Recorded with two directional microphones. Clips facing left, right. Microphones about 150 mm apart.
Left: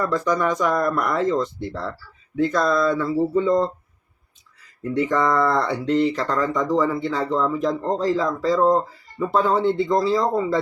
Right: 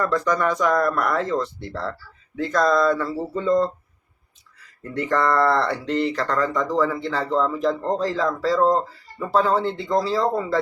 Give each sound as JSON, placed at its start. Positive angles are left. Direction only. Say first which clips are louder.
{"t": 0.0, "sound": "speech", "louder": "even", "side_deg": 0}
{"t": 0.8, "sound": "speech", "louder": "even", "side_deg": 15}
{"t": 4.8, "sound": "speech", "louder": "left 2 dB", "side_deg": 5}